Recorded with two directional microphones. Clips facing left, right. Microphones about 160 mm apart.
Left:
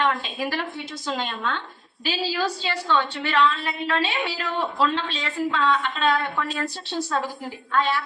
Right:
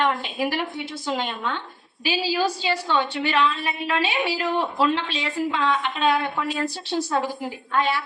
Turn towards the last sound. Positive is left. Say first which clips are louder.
# even
turn(degrees=-15)  # may be behind; listen again after turning